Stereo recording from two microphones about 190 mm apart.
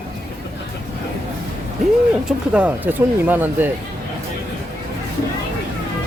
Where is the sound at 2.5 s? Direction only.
5° right (ahead or behind).